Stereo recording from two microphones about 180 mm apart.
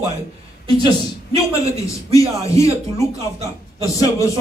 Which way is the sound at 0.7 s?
30° right (ahead or behind).